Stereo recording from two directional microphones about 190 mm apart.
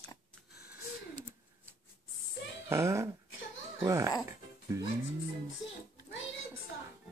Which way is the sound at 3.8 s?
15° right (ahead or behind).